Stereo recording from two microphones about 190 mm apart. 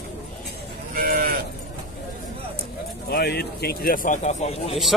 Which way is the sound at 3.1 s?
55° left (ahead or behind).